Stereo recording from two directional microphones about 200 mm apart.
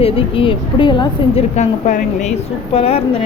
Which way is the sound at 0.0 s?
25° left (ahead or behind).